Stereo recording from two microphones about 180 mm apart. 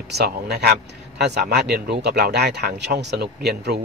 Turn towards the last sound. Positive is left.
turn(degrees=-65)  # may be behind; listen again after turning